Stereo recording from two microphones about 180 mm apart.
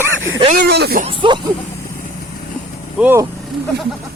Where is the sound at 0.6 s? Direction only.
60° right (ahead or behind).